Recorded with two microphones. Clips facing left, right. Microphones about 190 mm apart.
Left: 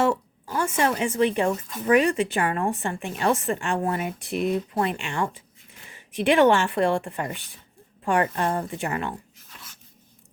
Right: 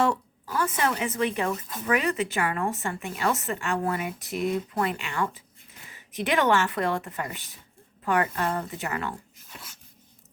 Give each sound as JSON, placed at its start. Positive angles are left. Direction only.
{"t": 0.0, "sound": "speech", "side_deg": 25}